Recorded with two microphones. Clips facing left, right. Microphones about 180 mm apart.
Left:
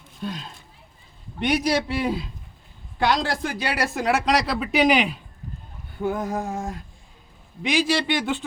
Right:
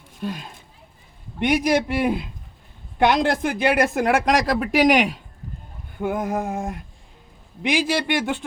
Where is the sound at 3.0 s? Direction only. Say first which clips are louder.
Right 4 dB; 20° right (ahead or behind).